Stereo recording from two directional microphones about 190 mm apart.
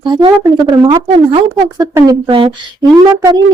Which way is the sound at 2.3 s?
30° right (ahead or behind).